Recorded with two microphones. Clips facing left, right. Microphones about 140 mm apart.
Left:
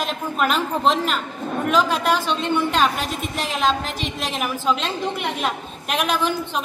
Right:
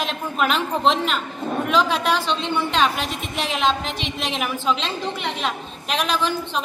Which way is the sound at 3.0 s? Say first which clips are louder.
Left 2 dB; 45° left (ahead or behind).